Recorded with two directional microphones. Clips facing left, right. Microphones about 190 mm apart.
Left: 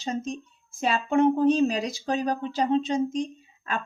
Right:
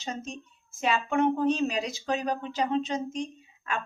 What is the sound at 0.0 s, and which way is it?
A woman's voice, 35° left (ahead or behind).